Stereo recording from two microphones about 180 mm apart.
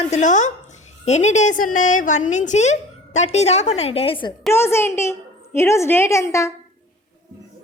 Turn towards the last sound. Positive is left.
turn(degrees=15)  # may be behind; listen again after turning